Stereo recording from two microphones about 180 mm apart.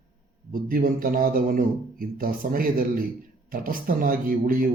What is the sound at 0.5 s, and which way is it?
Speech, 50° right (ahead or behind).